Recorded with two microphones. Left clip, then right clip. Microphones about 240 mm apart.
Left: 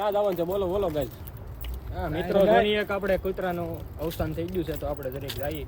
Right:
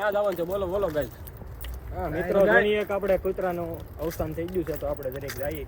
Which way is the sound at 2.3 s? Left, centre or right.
Left.